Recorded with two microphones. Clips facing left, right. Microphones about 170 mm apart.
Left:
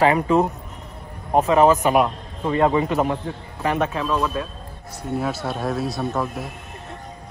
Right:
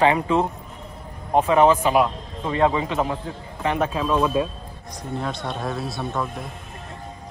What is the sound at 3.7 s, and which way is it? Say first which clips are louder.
Speech: right 2 dB; 5° right (ahead or behind).